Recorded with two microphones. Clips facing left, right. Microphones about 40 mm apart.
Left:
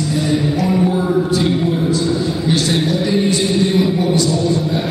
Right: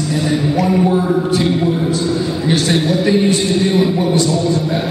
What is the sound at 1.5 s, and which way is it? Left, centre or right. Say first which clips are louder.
Music: right 1 dB; centre.